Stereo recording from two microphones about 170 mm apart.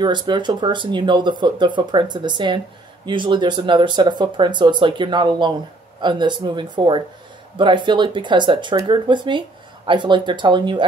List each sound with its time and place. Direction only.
0.0 s speech: 25° right (ahead or behind)